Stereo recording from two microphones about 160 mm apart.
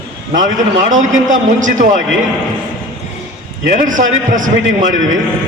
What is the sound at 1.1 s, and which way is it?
Speech, 55° right (ahead or behind).